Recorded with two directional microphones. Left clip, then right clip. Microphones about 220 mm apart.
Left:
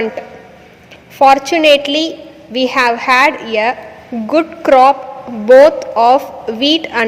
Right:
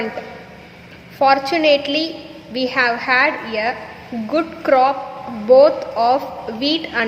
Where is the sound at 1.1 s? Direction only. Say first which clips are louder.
Left 6 dB; 30° left (ahead or behind).